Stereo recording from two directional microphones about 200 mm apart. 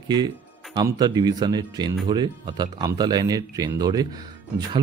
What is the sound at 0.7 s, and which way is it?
Speech, 20° right (ahead or behind).